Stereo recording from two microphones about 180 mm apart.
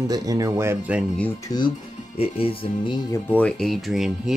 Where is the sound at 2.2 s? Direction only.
30° left (ahead or behind).